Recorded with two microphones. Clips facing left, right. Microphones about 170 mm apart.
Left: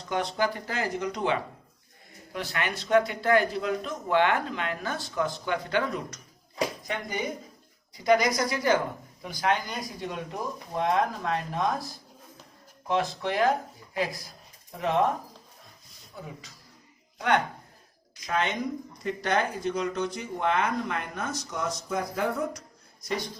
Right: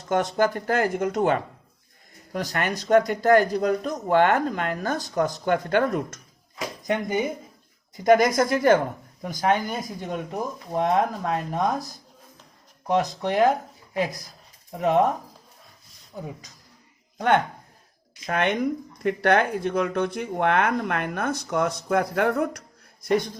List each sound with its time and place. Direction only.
0.1 s speech: 45° right (ahead or behind)
7.1 s speech: 25° right (ahead or behind)
7.9 s speech: 50° right (ahead or behind)
12.9 s speech: 40° right (ahead or behind)
17.2 s speech: 50° right (ahead or behind); by 22.6 s 65° right (ahead or behind)
23.0 s speech: 50° right (ahead or behind)